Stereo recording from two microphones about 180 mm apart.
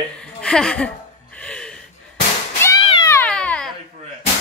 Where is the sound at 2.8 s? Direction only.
30° left (ahead or behind).